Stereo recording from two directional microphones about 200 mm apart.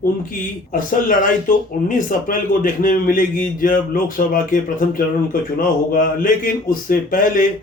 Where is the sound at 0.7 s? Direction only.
40° left (ahead or behind).